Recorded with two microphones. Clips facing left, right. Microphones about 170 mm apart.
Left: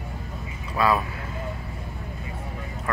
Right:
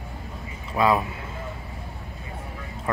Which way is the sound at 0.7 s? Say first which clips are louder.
Right 1 dB; 20° right (ahead or behind).